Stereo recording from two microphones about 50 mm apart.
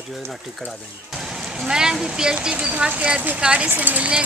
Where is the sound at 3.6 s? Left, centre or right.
Right.